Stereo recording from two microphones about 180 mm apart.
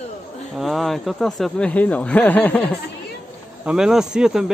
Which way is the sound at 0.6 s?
Centre (ahead or behind).